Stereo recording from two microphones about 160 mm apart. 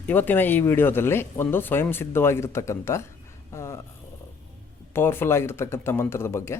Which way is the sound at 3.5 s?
15° left (ahead or behind).